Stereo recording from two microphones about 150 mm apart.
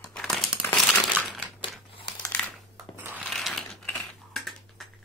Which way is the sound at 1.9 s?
35° left (ahead or behind).